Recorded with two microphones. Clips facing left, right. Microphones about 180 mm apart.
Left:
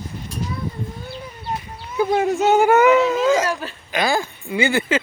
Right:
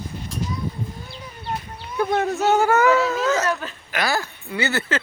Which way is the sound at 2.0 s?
10° left (ahead or behind).